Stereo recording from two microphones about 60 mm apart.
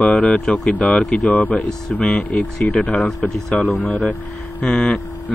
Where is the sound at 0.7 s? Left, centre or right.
Left.